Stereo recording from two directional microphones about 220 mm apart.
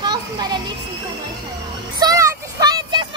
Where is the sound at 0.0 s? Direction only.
20° right (ahead or behind).